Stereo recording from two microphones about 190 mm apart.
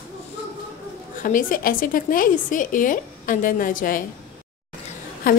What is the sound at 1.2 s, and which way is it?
A woman's voice, 45° left (ahead or behind).